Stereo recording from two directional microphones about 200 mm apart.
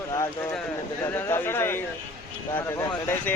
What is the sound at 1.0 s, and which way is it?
Speech, 10° left (ahead or behind).